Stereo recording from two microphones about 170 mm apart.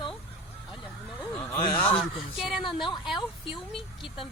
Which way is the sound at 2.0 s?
Centre (ahead or behind).